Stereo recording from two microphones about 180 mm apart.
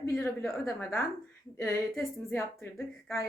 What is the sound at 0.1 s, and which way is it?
Speech, 10° left (ahead or behind).